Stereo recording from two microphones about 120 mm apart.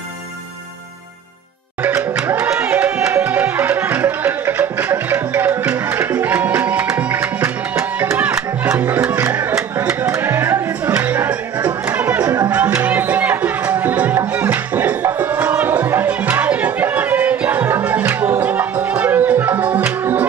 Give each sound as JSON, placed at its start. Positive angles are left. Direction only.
{"t": 2.0, "sound": "music", "side_deg": -15}